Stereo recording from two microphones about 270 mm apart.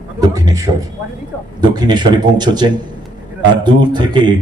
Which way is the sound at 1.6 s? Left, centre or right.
Centre.